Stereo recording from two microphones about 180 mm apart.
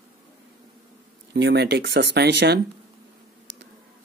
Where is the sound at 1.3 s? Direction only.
85° right.